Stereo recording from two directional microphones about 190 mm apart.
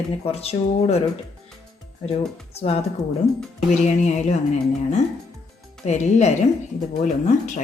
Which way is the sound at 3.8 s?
35° left (ahead or behind).